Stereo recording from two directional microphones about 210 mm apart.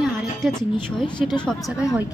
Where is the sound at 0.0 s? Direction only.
Centre (ahead or behind).